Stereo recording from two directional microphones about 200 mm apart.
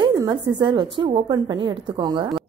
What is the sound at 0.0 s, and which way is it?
Speech, 20° right (ahead or behind).